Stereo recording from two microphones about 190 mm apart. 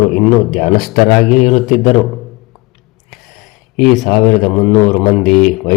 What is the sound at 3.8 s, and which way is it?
Speech, centre (ahead or behind).